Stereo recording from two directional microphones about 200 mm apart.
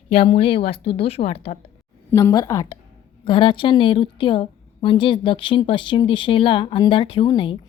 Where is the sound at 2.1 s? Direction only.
15° left (ahead or behind).